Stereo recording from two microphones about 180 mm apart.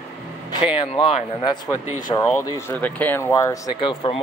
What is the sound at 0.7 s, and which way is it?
Speech, 30° left (ahead or behind).